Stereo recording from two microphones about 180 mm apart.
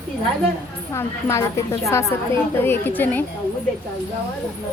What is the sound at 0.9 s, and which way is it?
A woman's voice, 15° left (ahead or behind).